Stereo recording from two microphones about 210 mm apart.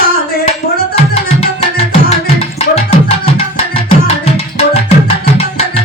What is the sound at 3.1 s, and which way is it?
Tabla, 30° left (ahead or behind).